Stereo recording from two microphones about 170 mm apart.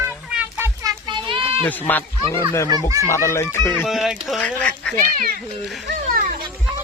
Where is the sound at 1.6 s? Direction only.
10° left (ahead or behind).